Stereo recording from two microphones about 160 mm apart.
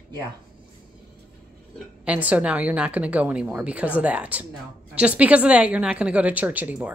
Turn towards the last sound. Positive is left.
turn(degrees=-10)  # may be behind; listen again after turning